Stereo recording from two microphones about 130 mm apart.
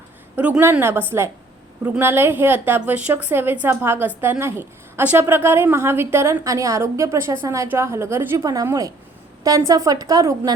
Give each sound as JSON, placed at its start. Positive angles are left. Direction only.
{"t": 0.3, "sound": "a woman's voice", "side_deg": -10}
{"t": 8.4, "sound": "a woman's voice", "side_deg": -30}